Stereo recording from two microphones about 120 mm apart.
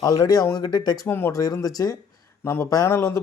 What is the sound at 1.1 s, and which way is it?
Speech, 20° left (ahead or behind).